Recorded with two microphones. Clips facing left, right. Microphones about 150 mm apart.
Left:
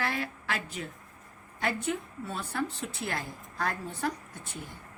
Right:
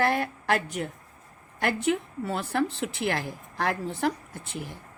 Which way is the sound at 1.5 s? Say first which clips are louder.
Right 5 dB; 75° right (ahead or behind).